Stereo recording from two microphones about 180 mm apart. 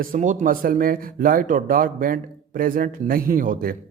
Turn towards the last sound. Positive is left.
turn(degrees=-50)  # may be behind; listen again after turning